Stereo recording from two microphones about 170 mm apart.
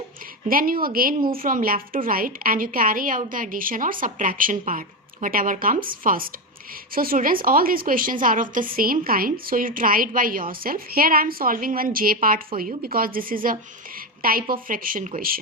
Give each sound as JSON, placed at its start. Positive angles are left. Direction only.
{"t": 0.4, "sound": "a woman's voice", "side_deg": -55}